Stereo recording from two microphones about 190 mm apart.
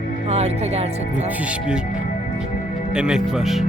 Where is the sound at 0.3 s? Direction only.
35° right (ahead or behind).